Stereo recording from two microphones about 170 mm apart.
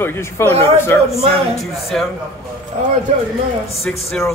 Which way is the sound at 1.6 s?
Centre (ahead or behind).